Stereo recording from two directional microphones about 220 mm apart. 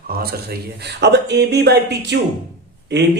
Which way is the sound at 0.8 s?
50° right (ahead or behind).